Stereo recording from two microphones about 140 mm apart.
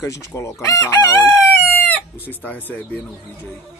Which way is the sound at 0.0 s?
20° left (ahead or behind).